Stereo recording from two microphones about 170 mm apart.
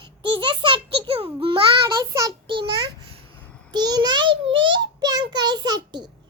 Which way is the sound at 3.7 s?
25° right (ahead or behind).